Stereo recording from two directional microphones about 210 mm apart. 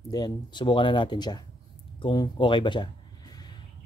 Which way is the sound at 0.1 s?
20° left (ahead or behind).